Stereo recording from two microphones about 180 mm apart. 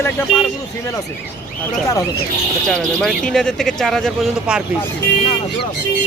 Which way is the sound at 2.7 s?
5° left (ahead or behind).